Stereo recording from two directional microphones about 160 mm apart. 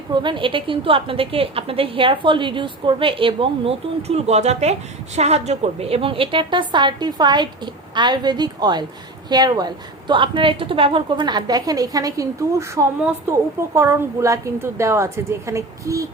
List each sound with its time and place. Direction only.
0.1 s a woman's voice: 30° right (ahead or behind)